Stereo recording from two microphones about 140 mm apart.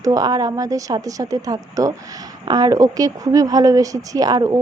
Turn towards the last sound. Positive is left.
turn(degrees=-25)  # may be behind; listen again after turning